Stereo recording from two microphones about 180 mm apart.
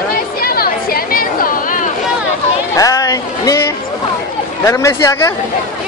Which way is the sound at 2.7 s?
20° left (ahead or behind).